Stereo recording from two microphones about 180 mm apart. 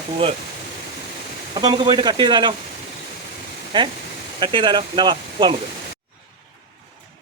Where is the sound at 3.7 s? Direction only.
25° right (ahead or behind).